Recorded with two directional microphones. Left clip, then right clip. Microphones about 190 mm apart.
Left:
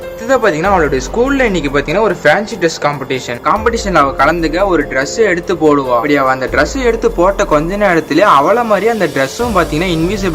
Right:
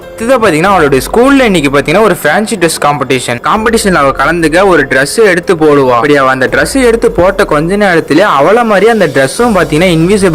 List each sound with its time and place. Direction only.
0.3 s speech: 30° right (ahead or behind)